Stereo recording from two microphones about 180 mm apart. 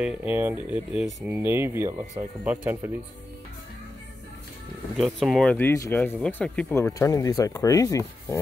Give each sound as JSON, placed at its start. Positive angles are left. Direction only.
{"t": 0.0, "sound": "speech", "side_deg": -10}
{"t": 4.9, "sound": "speech", "side_deg": 0}